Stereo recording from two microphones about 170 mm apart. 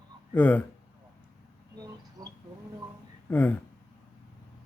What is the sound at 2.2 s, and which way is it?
Speech, 20° right (ahead or behind).